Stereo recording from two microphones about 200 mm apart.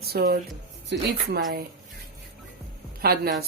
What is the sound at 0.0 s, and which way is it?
Speech, 50° right (ahead or behind).